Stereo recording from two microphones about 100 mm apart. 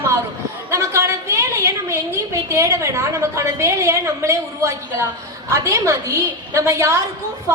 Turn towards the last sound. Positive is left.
turn(degrees=-30)  # may be behind; listen again after turning